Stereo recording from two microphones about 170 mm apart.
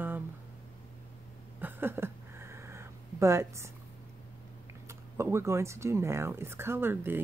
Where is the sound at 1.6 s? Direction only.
10° right (ahead or behind).